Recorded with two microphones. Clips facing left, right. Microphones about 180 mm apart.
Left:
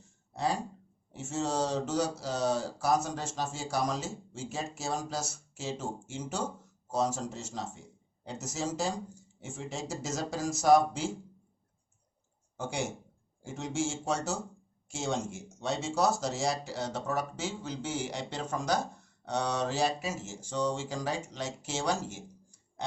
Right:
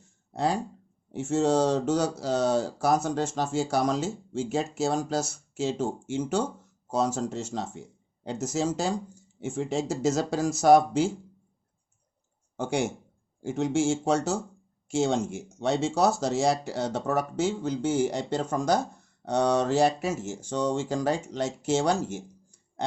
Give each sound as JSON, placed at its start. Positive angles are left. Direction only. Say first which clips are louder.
{"t": 1.1, "sound": "speech", "louder": "right 9 dB", "side_deg": -55}
{"t": 13.4, "sound": "speech", "louder": "right 8 dB", "side_deg": -65}